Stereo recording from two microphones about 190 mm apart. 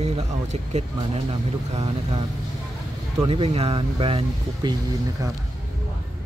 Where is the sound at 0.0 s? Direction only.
35° right (ahead or behind).